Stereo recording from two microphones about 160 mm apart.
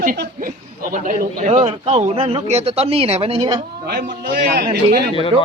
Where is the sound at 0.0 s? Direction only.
60° right (ahead or behind).